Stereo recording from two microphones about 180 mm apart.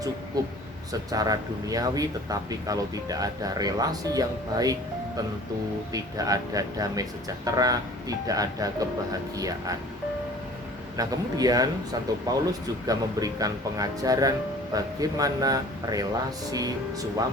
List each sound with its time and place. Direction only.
0.4 s speech: 20° right (ahead or behind)
10.9 s speech: 20° right (ahead or behind)